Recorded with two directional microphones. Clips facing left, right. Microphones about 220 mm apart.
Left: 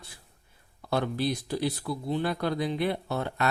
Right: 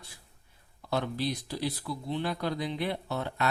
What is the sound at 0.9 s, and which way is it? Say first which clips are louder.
Speech: left 3 dB; 55° left (ahead or behind).